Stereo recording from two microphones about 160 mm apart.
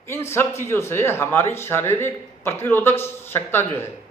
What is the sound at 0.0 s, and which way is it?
Speech, 15° left (ahead or behind).